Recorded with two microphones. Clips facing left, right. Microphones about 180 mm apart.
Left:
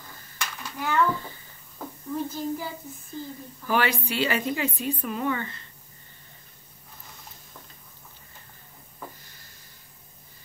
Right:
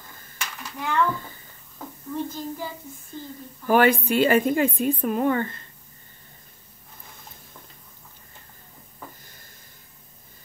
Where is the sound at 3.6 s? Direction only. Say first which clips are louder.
Right 7 dB; 50° right (ahead or behind).